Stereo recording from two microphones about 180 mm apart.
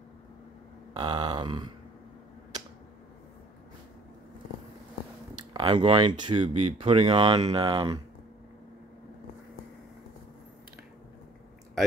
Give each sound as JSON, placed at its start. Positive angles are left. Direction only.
{"t": 0.9, "sound": "speech", "side_deg": -25}
{"t": 5.5, "sound": "speech", "side_deg": -25}